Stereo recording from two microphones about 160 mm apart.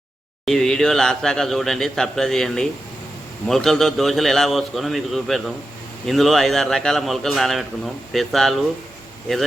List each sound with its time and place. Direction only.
0.4 s speech: centre (ahead or behind)